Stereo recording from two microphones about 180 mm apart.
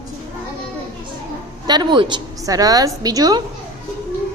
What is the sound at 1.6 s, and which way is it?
A woman's voice, 25° right (ahead or behind).